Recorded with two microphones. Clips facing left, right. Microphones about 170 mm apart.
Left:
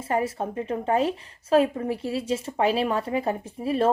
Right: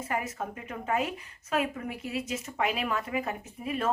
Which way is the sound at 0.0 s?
30° left (ahead or behind).